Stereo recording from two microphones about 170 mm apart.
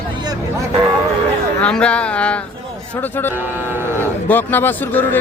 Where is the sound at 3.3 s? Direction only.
10° right (ahead or behind).